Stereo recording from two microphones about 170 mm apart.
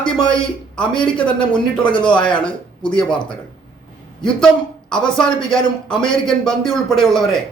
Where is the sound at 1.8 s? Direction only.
30° left (ahead or behind).